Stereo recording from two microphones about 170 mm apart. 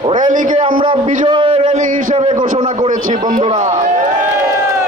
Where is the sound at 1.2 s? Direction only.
30° right (ahead or behind).